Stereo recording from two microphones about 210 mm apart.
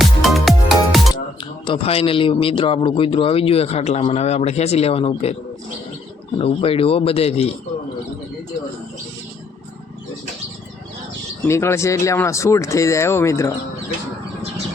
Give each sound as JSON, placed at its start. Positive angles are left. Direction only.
{"t": 0.0, "sound": "music", "side_deg": 0}
{"t": 1.6, "sound": "a man's voice", "side_deg": 25}
{"t": 6.4, "sound": "a man's voice", "side_deg": 25}
{"t": 11.4, "sound": "speech", "side_deg": 10}